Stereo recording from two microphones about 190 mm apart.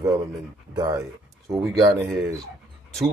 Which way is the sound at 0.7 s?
20° right (ahead or behind).